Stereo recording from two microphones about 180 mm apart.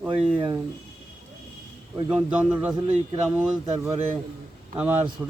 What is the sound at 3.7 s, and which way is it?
Speech, 20° right (ahead or behind).